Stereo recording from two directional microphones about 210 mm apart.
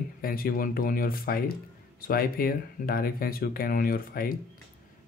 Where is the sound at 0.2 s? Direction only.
45° left (ahead or behind).